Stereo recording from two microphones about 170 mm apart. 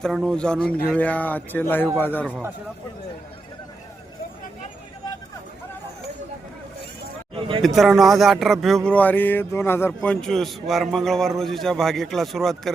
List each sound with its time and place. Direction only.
0.0 s speech: centre (ahead or behind)
7.3 s a sound: 30° right (ahead or behind)
7.6 s speech: centre (ahead or behind)